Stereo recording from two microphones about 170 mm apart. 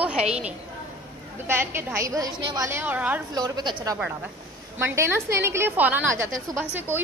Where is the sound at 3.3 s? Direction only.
25° right (ahead or behind).